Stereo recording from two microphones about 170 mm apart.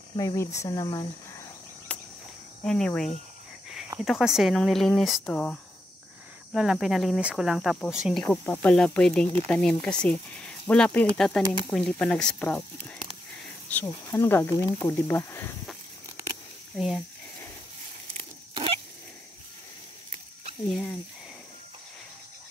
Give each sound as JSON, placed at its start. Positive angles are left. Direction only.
{"t": 0.1, "sound": "speech", "side_deg": 20}
{"t": 1.9, "sound": "cricket", "side_deg": 5}
{"t": 2.6, "sound": "speech", "side_deg": 5}
{"t": 13.7, "sound": "speech", "side_deg": 10}
{"t": 16.7, "sound": "speech", "side_deg": 0}